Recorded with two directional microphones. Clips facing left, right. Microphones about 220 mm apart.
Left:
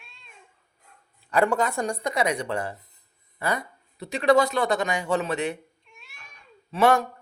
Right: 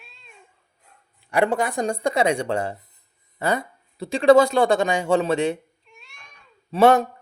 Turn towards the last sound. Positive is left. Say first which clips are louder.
# right 5 dB
turn(degrees=-25)  # may be behind; listen again after turning